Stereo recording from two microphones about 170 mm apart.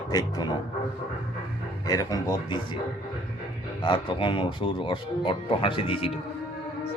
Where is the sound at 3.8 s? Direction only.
30° left (ahead or behind).